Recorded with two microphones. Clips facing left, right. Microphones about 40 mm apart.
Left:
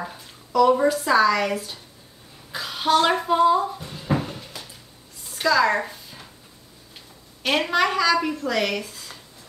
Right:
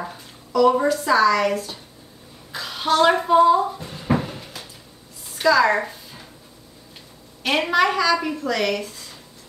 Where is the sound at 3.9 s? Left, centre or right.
Centre.